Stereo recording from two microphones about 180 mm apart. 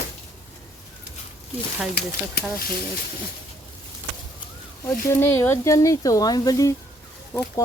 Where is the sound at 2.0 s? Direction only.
65° left (ahead or behind).